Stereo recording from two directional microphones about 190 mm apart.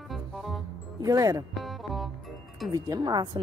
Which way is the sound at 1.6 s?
Centre (ahead or behind).